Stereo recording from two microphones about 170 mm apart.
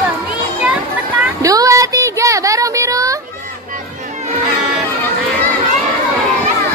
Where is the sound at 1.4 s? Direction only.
20° right (ahead or behind).